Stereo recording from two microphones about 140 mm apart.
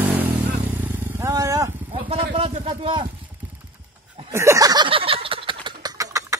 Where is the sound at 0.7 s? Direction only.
15° right (ahead or behind).